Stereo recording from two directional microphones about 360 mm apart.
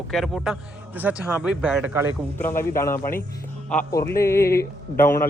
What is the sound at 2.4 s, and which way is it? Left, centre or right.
Speech, centre.